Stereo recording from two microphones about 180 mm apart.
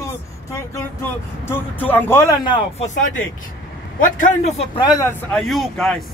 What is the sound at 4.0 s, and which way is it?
Speech, 45° left (ahead or behind).